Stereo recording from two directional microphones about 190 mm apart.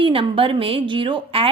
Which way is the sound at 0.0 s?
30° right (ahead or behind).